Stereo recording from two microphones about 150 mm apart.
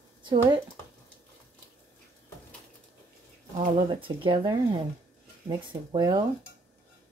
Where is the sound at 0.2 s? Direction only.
30° right (ahead or behind).